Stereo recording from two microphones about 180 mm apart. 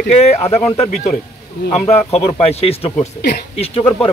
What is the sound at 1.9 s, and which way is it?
A man's voice, 35° left (ahead or behind).